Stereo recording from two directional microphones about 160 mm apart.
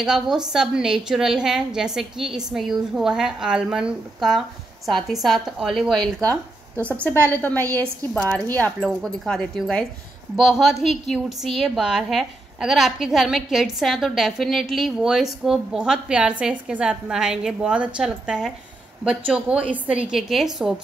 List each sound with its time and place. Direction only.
0.0 s a woman's voice: 5° right (ahead or behind)
8.1 s a woman's voice: 5° left (ahead or behind)